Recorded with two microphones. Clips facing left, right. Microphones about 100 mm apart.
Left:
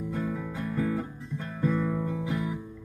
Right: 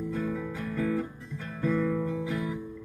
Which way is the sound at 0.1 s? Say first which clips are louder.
Even; 15° left (ahead or behind).